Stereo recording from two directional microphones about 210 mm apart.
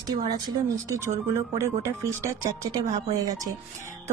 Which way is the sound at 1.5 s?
10° right (ahead or behind).